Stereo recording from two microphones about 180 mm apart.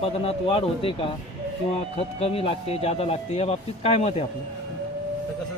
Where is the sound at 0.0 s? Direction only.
30° left (ahead or behind).